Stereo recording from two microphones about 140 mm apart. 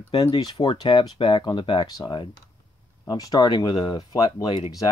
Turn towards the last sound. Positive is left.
turn(degrees=25)  # may be behind; listen again after turning